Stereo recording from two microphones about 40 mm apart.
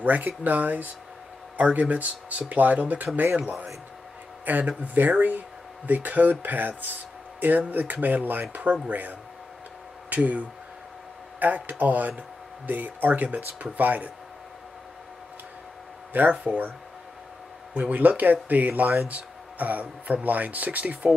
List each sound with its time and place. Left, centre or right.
0.0 s speech: right
16.1 s speech: right
17.7 s speech: right